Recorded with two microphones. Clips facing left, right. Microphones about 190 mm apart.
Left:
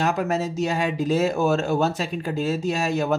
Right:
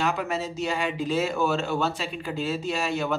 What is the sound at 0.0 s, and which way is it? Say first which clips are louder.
Speech: left 4 dB; 45° left (ahead or behind).